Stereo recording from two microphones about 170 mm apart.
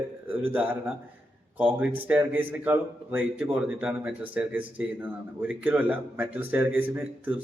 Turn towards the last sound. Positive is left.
turn(degrees=-10)  # may be behind; listen again after turning